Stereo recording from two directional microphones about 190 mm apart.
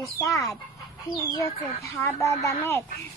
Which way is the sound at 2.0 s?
15° left (ahead or behind).